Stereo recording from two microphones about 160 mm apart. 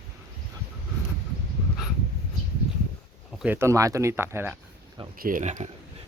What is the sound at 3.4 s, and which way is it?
Speech, 15° right (ahead or behind).